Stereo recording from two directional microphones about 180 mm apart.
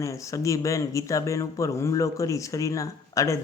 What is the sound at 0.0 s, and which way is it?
Speech, 15° left (ahead or behind).